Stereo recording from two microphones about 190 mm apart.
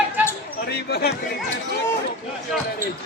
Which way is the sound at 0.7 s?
55° left (ahead or behind).